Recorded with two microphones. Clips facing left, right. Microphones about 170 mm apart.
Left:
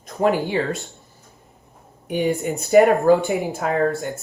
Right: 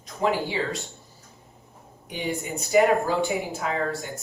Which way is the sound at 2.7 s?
55° left (ahead or behind).